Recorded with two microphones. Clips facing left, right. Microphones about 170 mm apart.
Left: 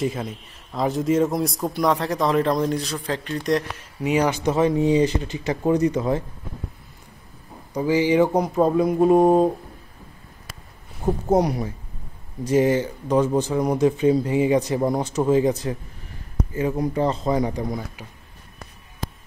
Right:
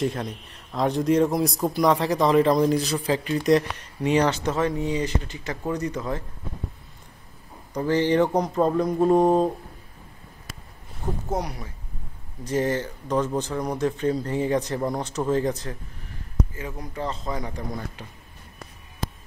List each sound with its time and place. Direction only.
0.0 s a man's voice: centre (ahead or behind); by 6.2 s 20° left (ahead or behind)
7.7 s speech: 5° left (ahead or behind)
11.2 s speech: 35° left (ahead or behind)
12.4 s speech: 10° left (ahead or behind)
16.5 s speech: 25° left (ahead or behind)
17.3 s speech: 15° left (ahead or behind)